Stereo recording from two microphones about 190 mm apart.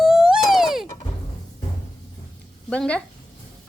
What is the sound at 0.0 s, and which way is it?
Music, centre (ahead or behind).